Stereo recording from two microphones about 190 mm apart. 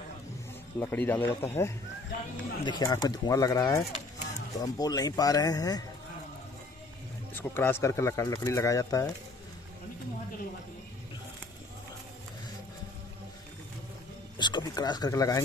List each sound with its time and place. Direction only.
0.7 s speech: 10° left (ahead or behind)
7.3 s speech: 10° left (ahead or behind)
14.4 s speech: 25° left (ahead or behind)